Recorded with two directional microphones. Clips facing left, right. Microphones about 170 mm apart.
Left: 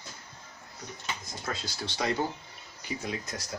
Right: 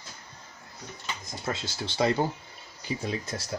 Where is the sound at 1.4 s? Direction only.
25° right (ahead or behind).